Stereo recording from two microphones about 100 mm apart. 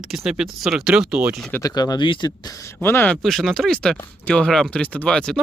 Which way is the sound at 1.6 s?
40° left (ahead or behind).